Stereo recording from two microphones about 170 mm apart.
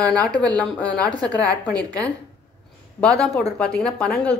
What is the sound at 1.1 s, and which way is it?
Speech, 25° right (ahead or behind).